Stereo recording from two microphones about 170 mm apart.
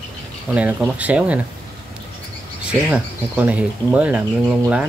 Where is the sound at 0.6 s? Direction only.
10° right (ahead or behind).